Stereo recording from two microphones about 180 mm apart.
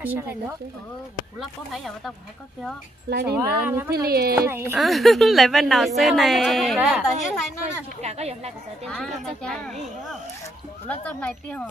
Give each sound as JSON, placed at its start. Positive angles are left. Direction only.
{"t": 0.0, "sound": "speech", "side_deg": -10}
{"t": 3.1, "sound": "a woman's voice", "side_deg": -65}
{"t": 3.3, "sound": "speech", "side_deg": -10}
{"t": 3.9, "sound": "a woman's voice", "side_deg": -60}
{"t": 4.4, "sound": "speech", "side_deg": -15}
{"t": 4.7, "sound": "speech", "side_deg": 0}
{"t": 8.0, "sound": "speech", "side_deg": -35}
{"t": 8.8, "sound": "speech", "side_deg": 5}